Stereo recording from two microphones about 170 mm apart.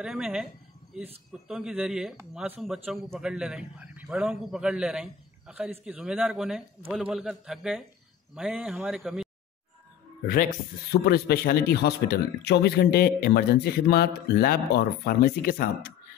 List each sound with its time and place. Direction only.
0.0 s a man's voice: 5° right (ahead or behind)
10.2 s speech: 60° left (ahead or behind)